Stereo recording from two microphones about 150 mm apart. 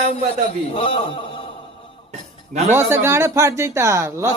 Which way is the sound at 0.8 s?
35° left (ahead or behind).